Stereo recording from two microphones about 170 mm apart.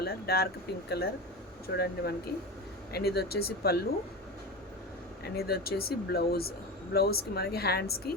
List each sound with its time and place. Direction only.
0.0 s speech: 70° left (ahead or behind)
5.2 s speech: 65° left (ahead or behind)